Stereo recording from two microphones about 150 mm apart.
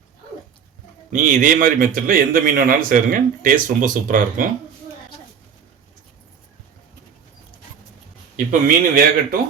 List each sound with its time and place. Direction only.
1.1 s speech: 60° right (ahead or behind)
8.4 s speech: 70° right (ahead or behind)